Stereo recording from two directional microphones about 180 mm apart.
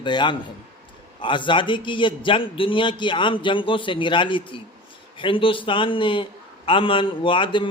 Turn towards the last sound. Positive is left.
turn(degrees=25)  # may be behind; listen again after turning